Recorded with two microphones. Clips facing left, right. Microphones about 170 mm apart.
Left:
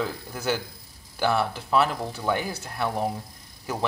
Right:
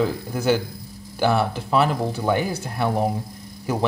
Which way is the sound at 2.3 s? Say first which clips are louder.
Right 3 dB; 5° right (ahead or behind).